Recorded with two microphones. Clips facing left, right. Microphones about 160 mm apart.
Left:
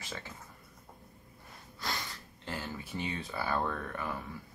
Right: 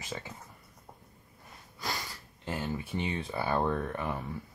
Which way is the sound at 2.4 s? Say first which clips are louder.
Right 5 dB; 20° right (ahead or behind).